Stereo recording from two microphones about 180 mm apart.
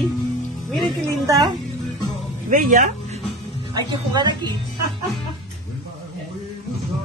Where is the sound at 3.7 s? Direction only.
25° right (ahead or behind).